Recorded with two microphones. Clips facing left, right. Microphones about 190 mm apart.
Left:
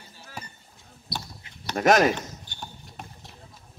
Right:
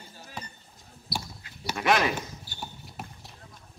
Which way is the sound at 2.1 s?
5° right (ahead or behind).